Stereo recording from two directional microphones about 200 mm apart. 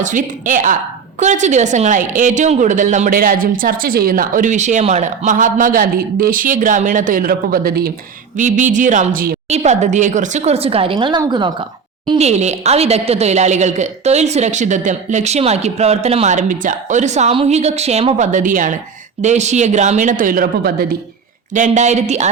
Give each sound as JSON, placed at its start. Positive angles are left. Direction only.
{"t": 0.0, "sound": "speech", "side_deg": -40}
{"t": 8.4, "sound": "speech", "side_deg": -40}
{"t": 9.5, "sound": "speech", "side_deg": -35}
{"t": 12.0, "sound": "speech", "side_deg": -35}
{"t": 21.5, "sound": "speech", "side_deg": -35}